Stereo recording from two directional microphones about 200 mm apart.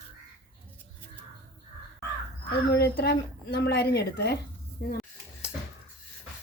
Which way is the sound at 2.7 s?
55° left (ahead or behind).